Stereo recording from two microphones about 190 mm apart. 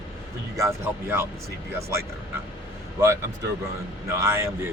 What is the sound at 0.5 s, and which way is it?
Speech, 15° right (ahead or behind).